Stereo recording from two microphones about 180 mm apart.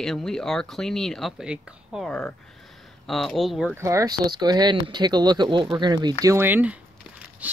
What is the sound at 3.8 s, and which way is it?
Speech, 15° right (ahead or behind).